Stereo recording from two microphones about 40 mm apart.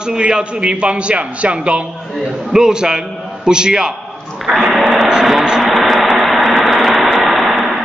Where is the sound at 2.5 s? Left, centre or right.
Centre.